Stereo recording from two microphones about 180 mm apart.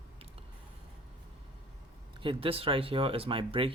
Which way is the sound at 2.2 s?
30° right (ahead or behind).